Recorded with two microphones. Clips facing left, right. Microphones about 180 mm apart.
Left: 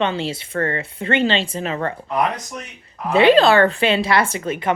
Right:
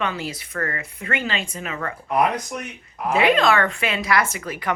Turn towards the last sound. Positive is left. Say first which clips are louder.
# left 5 dB
turn(degrees=25)  # may be behind; listen again after turning